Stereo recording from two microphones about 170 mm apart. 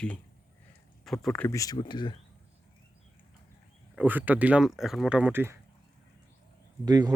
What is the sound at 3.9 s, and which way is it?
Speech, 10° right (ahead or behind).